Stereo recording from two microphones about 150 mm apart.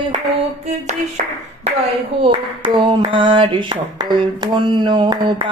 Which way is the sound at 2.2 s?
35° right (ahead or behind).